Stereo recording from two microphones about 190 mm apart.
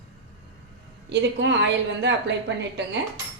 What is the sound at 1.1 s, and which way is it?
A woman's voice, 70° right (ahead or behind).